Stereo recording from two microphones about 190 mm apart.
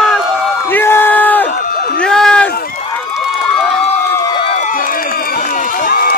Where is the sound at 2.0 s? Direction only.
5° left (ahead or behind).